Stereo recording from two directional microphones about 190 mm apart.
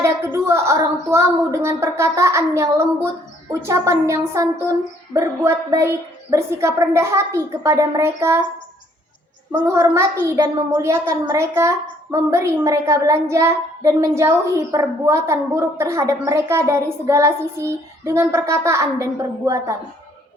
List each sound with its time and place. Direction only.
0.0 s a woman's voice: 15° right (ahead or behind)
9.5 s a woman's voice: 15° right (ahead or behind)